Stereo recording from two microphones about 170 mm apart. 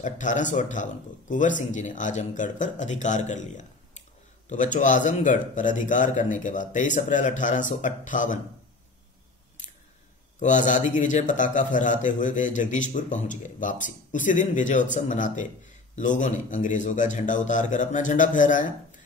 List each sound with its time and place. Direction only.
0.0 s a man's voice: 50° left (ahead or behind)
10.4 s a man's voice: 45° left (ahead or behind)